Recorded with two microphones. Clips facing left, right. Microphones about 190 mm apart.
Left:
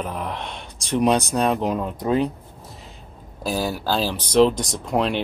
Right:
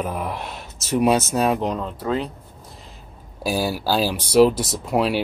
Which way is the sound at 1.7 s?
15° left (ahead or behind).